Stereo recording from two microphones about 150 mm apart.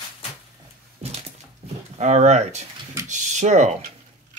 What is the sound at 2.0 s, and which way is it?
Speech, 50° right (ahead or behind).